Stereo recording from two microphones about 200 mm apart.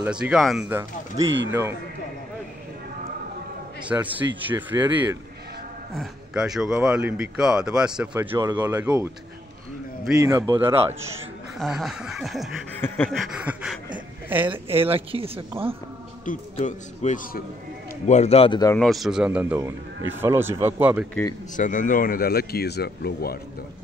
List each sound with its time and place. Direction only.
0.0 s speech: 5° right (ahead or behind)
1.2 s speech: 65° right (ahead or behind)
1.5 s a man's voice: 15° right (ahead or behind)
3.9 s a man's voice: 10° right (ahead or behind)
5.9 s a man's voice: centre (ahead or behind)
10.2 s a man's voice: 15° right (ahead or behind)
11.5 s speech: centre (ahead or behind)
12.8 s a sound: 10° left (ahead or behind)
14.5 s speech: 30° right (ahead or behind)
16.5 s a man's voice: 35° left (ahead or behind)
18.7 s a man's voice: centre (ahead or behind)
21.5 s speech: 40° left (ahead or behind)